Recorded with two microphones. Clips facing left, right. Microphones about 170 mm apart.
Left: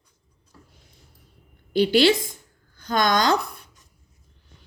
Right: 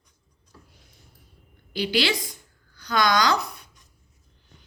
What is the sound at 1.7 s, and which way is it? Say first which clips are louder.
A woman's voice: left 7 dB; 45° left (ahead or behind).